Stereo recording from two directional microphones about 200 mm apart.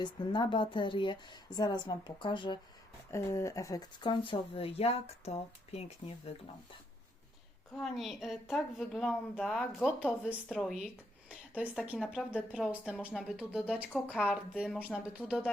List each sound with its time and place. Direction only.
0.0 s speech: 25° left (ahead or behind)
7.8 s a woman's voice: centre (ahead or behind)